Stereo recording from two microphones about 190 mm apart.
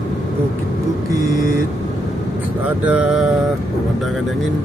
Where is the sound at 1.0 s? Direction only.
20° right (ahead or behind).